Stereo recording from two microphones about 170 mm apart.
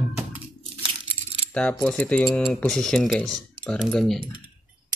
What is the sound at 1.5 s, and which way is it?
Mechanisms, 10° left (ahead or behind).